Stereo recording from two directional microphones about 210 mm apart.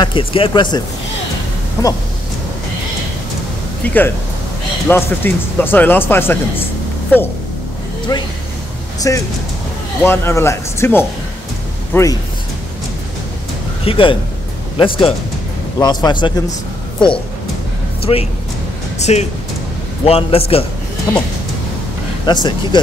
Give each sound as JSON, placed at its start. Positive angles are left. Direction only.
{"t": 0.0, "sound": "speech", "side_deg": 25}
{"t": 3.8, "sound": "speech", "side_deg": 10}
{"t": 8.1, "sound": "speech", "side_deg": 20}
{"t": 13.8, "sound": "speech", "side_deg": 25}
{"t": 18.1, "sound": "speech", "side_deg": 25}
{"t": 21.1, "sound": "speech", "side_deg": 15}